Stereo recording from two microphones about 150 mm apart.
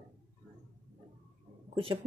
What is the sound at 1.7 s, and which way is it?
Speech, 40° right (ahead or behind).